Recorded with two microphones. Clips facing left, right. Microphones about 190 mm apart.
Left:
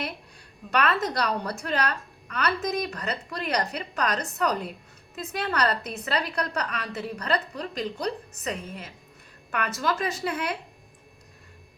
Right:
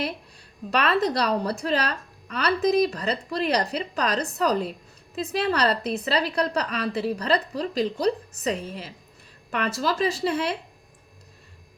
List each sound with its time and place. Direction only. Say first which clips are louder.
0.7 s a woman's voice: right 3 dB; 35° right (ahead or behind)